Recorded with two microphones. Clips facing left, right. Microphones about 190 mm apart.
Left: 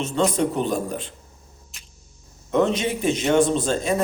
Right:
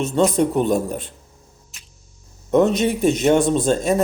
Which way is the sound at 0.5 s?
50° right (ahead or behind).